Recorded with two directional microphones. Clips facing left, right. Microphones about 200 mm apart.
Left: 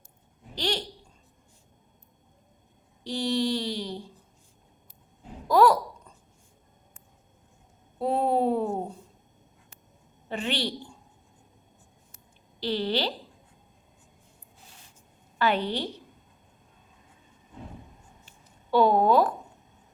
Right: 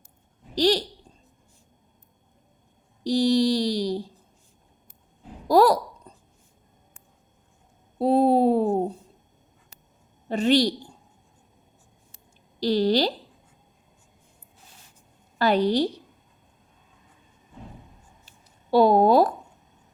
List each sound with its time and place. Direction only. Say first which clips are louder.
0.5 s mantra: right 9 dB; 35° right (ahead or behind)
3.0 s mantra: right 7 dB; 35° right (ahead or behind)
5.5 s a sound: right 2 dB; 35° right (ahead or behind)
7.9 s speech: right 6 dB; 35° right (ahead or behind)
10.2 s a woman's voice: right 10 dB; 40° right (ahead or behind)
12.5 s speech: right 7 dB; 40° right (ahead or behind)
15.4 s mantra: right 6 dB; 40° right (ahead or behind)
18.3 s a sound: right 4 dB; 35° right (ahead or behind)